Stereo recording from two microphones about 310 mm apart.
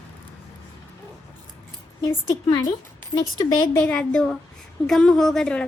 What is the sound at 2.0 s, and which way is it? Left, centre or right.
A woman's voice, centre.